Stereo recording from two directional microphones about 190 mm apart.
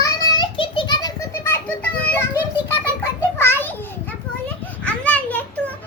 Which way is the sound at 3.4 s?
10° left (ahead or behind).